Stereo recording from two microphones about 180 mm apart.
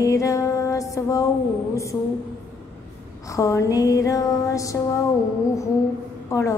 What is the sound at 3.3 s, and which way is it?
Music, 20° left (ahead or behind).